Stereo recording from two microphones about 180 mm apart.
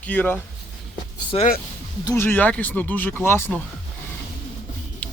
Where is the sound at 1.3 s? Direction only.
30° left (ahead or behind).